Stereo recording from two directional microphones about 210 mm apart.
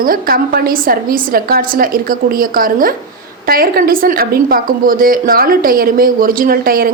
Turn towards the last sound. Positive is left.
turn(degrees=-45)  # may be behind; listen again after turning